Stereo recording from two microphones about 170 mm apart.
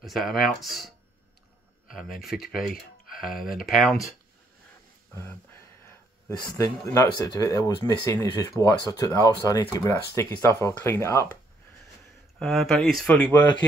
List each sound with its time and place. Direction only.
0.0 s speech: centre (ahead or behind)
5.1 s speech: 15° left (ahead or behind)
12.4 s speech: 5° left (ahead or behind)